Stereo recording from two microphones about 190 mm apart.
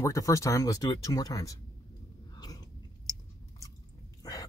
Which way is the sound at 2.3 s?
20° left (ahead or behind).